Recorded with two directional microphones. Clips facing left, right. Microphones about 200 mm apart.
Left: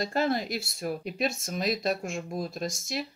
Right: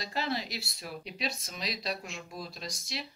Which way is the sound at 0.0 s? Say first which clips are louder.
Left 7 dB; 50° left (ahead or behind).